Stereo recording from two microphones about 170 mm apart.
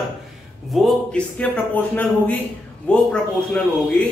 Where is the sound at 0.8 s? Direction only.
5° left (ahead or behind).